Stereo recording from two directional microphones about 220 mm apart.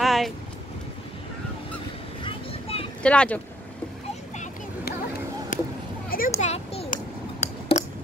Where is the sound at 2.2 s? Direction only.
25° left (ahead or behind).